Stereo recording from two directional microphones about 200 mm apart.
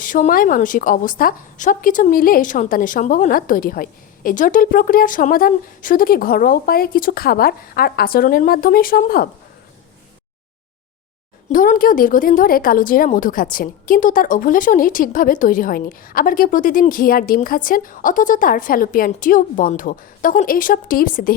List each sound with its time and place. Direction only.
0.0 s a woman's voice: 40° left (ahead or behind)
11.5 s a woman's voice: 45° left (ahead or behind)